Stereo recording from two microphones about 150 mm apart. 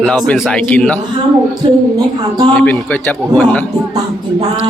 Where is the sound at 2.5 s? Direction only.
10° left (ahead or behind).